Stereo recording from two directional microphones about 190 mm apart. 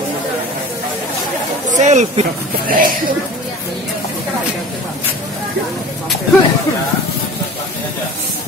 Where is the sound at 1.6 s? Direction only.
40° right (ahead or behind).